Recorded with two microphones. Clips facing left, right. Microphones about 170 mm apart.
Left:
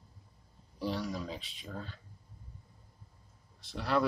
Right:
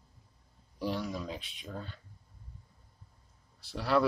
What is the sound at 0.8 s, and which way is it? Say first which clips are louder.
Speech: right 1 dB; centre (ahead or behind).